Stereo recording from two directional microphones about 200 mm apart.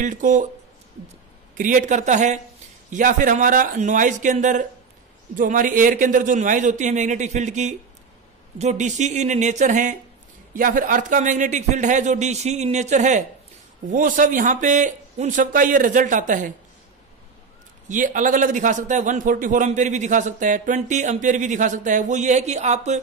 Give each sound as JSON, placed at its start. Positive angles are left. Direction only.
{"t": 0.0, "sound": "a man's voice", "side_deg": -40}
{"t": 1.6, "sound": "a man's voice", "side_deg": -40}
{"t": 17.8, "sound": "a man's voice", "side_deg": -40}